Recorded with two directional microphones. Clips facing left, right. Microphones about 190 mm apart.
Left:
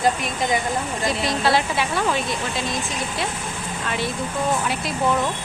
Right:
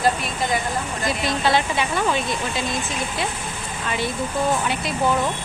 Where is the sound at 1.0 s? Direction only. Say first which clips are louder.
Even; centre (ahead or behind).